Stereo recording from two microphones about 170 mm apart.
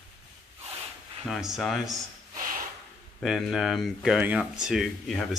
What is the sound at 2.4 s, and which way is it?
Snort, 55° right (ahead or behind).